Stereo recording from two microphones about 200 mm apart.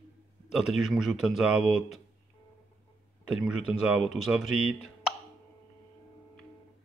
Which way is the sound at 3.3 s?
Centre (ahead or behind).